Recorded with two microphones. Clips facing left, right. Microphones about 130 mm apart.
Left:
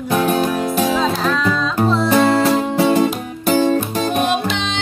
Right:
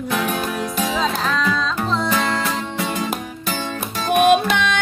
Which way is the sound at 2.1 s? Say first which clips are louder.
Left 8 dB; 35° left (ahead or behind).